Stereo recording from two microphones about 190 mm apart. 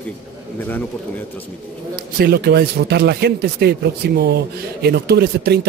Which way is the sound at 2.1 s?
55° right (ahead or behind).